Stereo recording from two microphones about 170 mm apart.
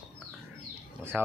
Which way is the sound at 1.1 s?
5° right (ahead or behind).